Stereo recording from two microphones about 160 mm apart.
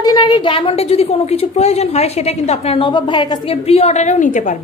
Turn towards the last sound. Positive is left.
turn(degrees=50)  # may be behind; listen again after turning